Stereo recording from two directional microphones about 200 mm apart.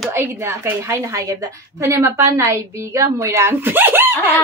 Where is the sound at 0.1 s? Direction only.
15° right (ahead or behind).